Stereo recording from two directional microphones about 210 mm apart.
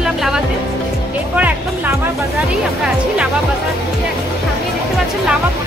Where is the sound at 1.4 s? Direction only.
10° right (ahead or behind).